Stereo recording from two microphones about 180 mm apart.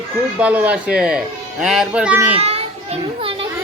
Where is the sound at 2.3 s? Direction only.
35° right (ahead or behind).